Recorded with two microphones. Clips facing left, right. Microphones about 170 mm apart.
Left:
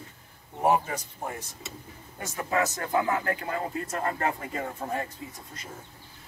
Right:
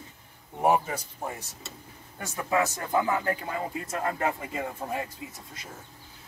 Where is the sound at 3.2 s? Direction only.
10° right (ahead or behind).